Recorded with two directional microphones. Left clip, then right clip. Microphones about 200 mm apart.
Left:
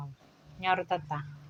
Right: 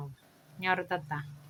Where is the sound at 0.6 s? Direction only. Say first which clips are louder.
Left 2 dB; 15° right (ahead or behind).